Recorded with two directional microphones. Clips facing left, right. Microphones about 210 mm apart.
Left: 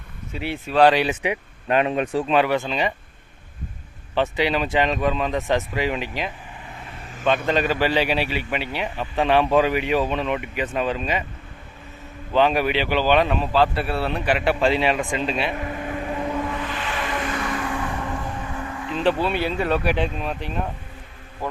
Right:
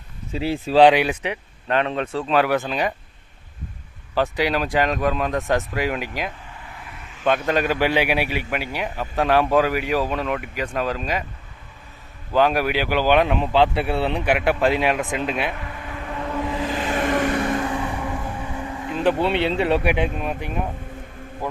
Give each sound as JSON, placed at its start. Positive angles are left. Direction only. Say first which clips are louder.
{"t": 0.5, "sound": "speech", "louder": "right 7 dB", "side_deg": -35}
{"t": 0.8, "sound": "speech", "louder": "right 2 dB", "side_deg": -15}
{"t": 1.2, "sound": "speech", "louder": "left 3 dB", "side_deg": 10}
{"t": 2.3, "sound": "speech", "louder": "right 2 dB", "side_deg": 0}
{"t": 4.1, "sound": "speech", "louder": "even", "side_deg": 0}
{"t": 12.3, "sound": "speech", "louder": "even", "side_deg": -5}
{"t": 15.5, "sound": "vehicle", "louder": "left 6 dB", "side_deg": 35}
{"t": 16.5, "sound": "vehicle", "louder": "right 4 dB", "side_deg": -30}
{"t": 17.4, "sound": "vehicle", "louder": "right 4 dB", "side_deg": -25}
{"t": 17.7, "sound": "vehicle", "louder": "right 1 dB", "side_deg": -10}
{"t": 19.2, "sound": "speech", "louder": "right 3 dB", "side_deg": -25}
{"t": 20.0, "sound": "speech", "louder": "right 1 dB", "side_deg": -10}